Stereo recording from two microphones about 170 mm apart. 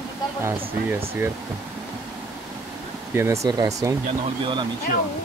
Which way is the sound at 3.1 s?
15° right (ahead or behind).